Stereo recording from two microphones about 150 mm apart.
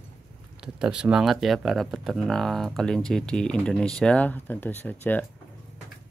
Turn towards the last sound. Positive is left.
turn(degrees=10)  # may be behind; listen again after turning